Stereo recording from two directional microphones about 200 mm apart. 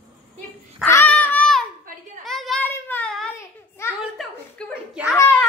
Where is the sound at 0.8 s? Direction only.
10° left (ahead or behind).